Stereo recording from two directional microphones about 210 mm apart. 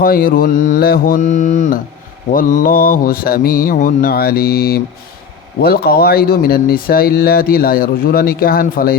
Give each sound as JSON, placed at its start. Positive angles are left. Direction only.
{"t": 0.0, "sound": "mantra", "side_deg": 40}
{"t": 2.3, "sound": "speech", "side_deg": 40}